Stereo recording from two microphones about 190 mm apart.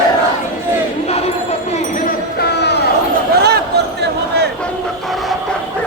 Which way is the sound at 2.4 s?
60° left (ahead or behind).